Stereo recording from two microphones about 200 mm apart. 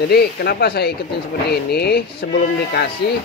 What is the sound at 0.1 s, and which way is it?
Speech, 50° left (ahead or behind).